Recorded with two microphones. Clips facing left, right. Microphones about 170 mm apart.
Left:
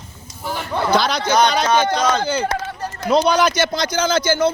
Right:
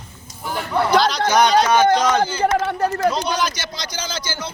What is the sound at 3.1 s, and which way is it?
Speech, 60° left (ahead or behind).